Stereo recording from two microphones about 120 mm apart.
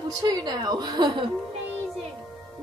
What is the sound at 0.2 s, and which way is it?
A woman's voice, 30° right (ahead or behind).